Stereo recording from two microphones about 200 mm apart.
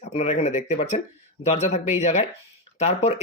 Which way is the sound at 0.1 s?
35° left (ahead or behind).